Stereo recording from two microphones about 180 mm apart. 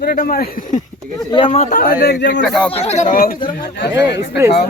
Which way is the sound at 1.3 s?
30° left (ahead or behind).